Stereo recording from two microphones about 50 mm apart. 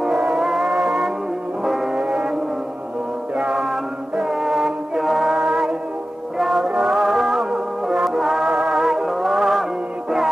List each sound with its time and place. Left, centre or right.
0.0 s music: centre
2.0 s music: centre
3.3 s music: centre